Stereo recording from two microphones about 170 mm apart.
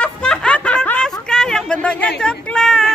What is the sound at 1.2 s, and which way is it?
Speech, 5° left (ahead or behind).